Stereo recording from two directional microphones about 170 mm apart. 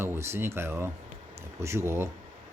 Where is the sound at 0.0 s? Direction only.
15° right (ahead or behind).